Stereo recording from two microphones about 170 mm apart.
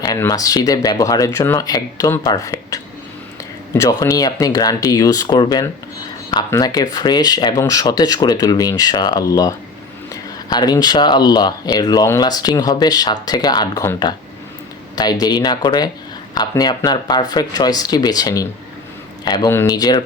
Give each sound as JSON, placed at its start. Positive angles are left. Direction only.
{"t": 0.2, "sound": "speech", "side_deg": 20}